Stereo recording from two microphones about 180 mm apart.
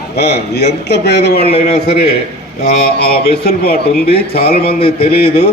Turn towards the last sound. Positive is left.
turn(degrees=60)  # may be behind; listen again after turning